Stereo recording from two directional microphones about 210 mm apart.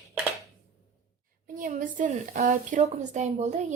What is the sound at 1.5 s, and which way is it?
A woman's voice, 40° right (ahead or behind).